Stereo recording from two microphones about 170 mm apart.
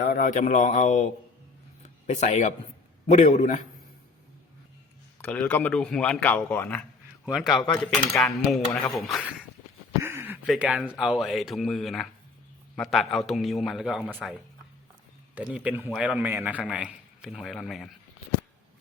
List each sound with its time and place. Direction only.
0.1 s speech: 50° left (ahead or behind)
1.8 s a sound: 45° left (ahead or behind)
3.1 s speech: 45° left (ahead or behind)
5.2 s speech: 10° left (ahead or behind)
7.3 s a man's voice: centre (ahead or behind)
10.0 s a sound: 15° right (ahead or behind)
10.4 s a man's voice: centre (ahead or behind)
15.4 s a man's voice: 10° right (ahead or behind)